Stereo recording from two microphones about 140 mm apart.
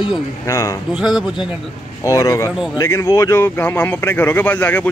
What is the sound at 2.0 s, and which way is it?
Speech, 25° left (ahead or behind).